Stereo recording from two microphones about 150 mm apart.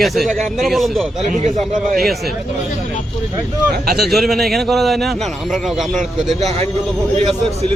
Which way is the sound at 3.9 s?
Centre (ahead or behind).